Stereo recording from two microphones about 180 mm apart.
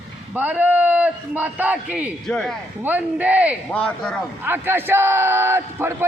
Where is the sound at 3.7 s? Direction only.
5° left (ahead or behind).